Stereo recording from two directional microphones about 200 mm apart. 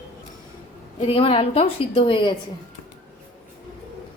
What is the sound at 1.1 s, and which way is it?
Speech, 25° left (ahead or behind).